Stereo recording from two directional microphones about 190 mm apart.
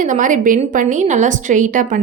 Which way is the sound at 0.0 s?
45° right (ahead or behind).